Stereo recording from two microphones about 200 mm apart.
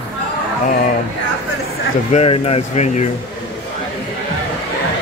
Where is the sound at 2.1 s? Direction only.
30° left (ahead or behind).